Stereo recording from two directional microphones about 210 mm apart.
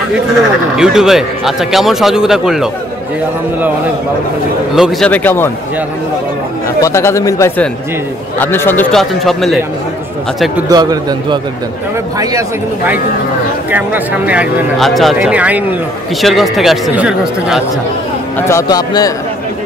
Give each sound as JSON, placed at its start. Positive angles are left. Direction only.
{"t": 0.7, "sound": "speech", "side_deg": 0}
{"t": 4.7, "sound": "speech", "side_deg": 0}
{"t": 6.8, "sound": "speech", "side_deg": 15}
{"t": 10.7, "sound": "a man's voice", "side_deg": -20}
{"t": 18.5, "sound": "speech", "side_deg": 15}